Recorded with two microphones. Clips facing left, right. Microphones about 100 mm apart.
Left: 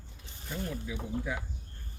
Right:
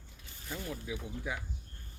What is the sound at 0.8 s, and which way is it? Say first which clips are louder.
Speech: left 3 dB; 15° right (ahead or behind).